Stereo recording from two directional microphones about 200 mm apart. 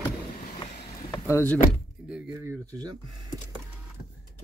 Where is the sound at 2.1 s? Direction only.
15° right (ahead or behind).